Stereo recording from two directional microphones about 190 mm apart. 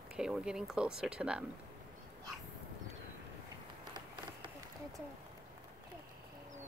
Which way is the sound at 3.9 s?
25° right (ahead or behind).